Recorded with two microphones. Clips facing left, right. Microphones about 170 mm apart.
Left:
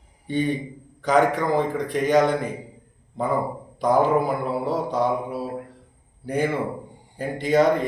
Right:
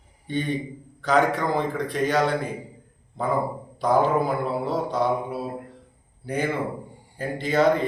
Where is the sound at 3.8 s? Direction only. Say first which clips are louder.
Left 1 dB; 15° left (ahead or behind).